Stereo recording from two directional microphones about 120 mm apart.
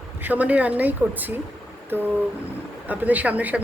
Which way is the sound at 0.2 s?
15° right (ahead or behind).